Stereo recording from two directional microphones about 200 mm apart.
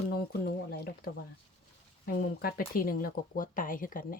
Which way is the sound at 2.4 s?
45° left (ahead or behind).